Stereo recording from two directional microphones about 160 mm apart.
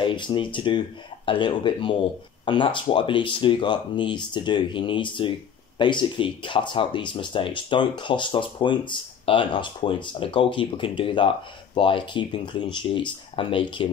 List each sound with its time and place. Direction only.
0.0 s speech: 30° left (ahead or behind)